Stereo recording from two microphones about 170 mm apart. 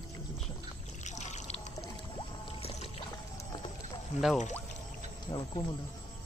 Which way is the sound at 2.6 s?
35° left (ahead or behind).